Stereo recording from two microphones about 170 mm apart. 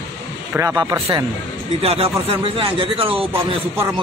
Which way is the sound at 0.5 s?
15° right (ahead or behind).